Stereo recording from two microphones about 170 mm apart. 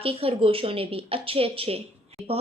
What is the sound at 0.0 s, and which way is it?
Speech, 35° right (ahead or behind).